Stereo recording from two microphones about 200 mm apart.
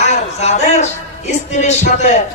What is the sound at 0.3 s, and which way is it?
Music, 35° left (ahead or behind).